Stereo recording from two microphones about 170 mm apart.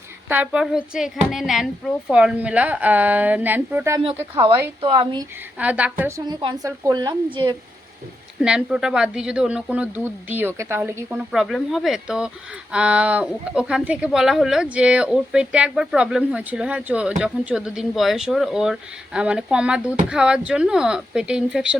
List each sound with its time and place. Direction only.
0.3 s a woman's voice: 10° right (ahead or behind)
4.9 s speech: 25° right (ahead or behind)
5.5 s speech: 10° right (ahead or behind); by 7.2 s 25° right (ahead or behind)
8.4 s a woman's voice: 5° right (ahead or behind)
11.3 s a woman's voice: centre (ahead or behind)